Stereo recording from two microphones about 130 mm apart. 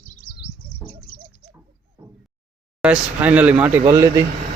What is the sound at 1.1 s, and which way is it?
Bird, 90° left.